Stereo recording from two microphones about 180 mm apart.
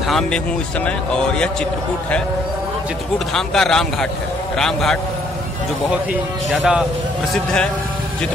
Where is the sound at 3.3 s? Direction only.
5° left (ahead or behind).